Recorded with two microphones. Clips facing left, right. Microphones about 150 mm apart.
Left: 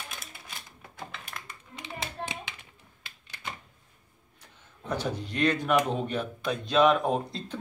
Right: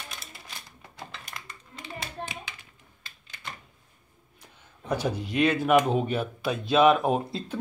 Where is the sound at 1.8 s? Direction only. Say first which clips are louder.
Even; 25° left (ahead or behind).